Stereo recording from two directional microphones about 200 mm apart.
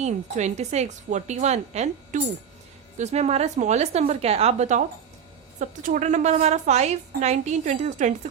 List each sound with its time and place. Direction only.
0.0 s a woman's voice: 35° right (ahead or behind)